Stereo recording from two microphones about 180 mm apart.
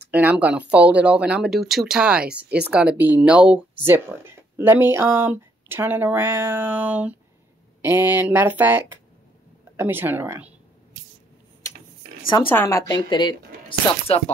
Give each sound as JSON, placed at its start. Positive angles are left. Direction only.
{"t": 0.1, "sound": "speech", "side_deg": -10}
{"t": 12.4, "sound": "speech", "side_deg": 15}